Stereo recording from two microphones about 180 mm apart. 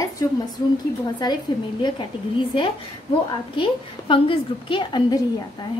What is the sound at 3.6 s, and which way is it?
A woman's voice, 30° left (ahead or behind).